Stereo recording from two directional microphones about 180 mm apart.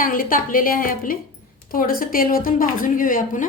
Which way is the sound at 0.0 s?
50° left (ahead or behind).